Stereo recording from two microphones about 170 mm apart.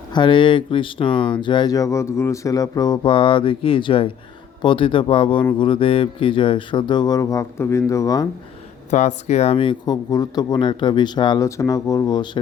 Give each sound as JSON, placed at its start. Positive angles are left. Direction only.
{"t": 0.1, "sound": "speech", "side_deg": 30}
{"t": 8.9, "sound": "speech", "side_deg": 45}